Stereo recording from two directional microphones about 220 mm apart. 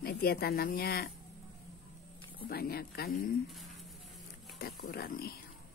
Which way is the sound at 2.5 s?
45° left (ahead or behind).